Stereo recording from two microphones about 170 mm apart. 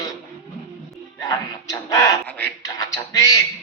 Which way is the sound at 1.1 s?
20° left (ahead or behind).